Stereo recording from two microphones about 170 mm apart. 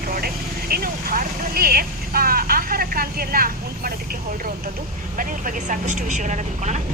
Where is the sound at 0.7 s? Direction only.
60° right (ahead or behind).